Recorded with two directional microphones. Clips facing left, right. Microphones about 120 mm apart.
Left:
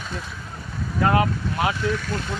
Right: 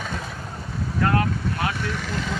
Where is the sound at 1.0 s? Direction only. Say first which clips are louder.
Left 2 dB; 20° left (ahead or behind).